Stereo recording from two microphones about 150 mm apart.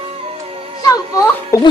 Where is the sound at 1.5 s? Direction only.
20° left (ahead or behind).